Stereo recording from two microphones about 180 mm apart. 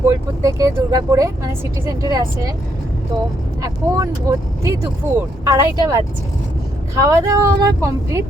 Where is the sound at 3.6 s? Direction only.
20° right (ahead or behind).